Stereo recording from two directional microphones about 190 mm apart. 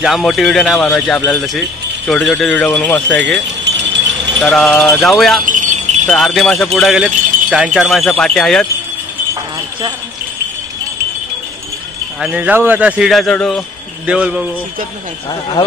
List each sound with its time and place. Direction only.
0.0 s speech: centre (ahead or behind)
4.4 s speech: centre (ahead or behind)
5.4 s wind chime: 45° right (ahead or behind)
6.0 s speech: centre (ahead or behind)
12.2 s speech: 5° right (ahead or behind)
14.0 s speech: 5° right (ahead or behind)